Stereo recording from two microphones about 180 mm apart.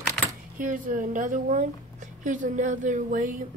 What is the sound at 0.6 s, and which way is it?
A woman's voice, 50° right (ahead or behind).